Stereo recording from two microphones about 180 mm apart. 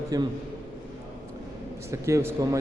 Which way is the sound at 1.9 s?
15° right (ahead or behind).